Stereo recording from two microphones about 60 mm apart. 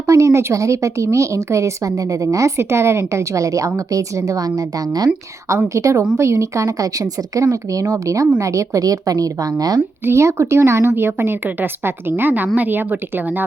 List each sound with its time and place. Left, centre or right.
0.0 s a woman's voice: right
2.6 s a woman's voice: right
5.6 s a woman's voice: right
10.0 s a woman's voice: right